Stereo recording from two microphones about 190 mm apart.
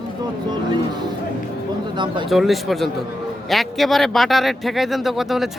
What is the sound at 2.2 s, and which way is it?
Speech, centre (ahead or behind).